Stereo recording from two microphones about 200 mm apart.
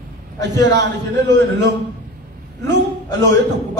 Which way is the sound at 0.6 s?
60° right (ahead or behind).